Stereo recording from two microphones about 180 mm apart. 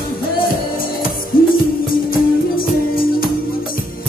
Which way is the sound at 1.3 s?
55° left (ahead or behind).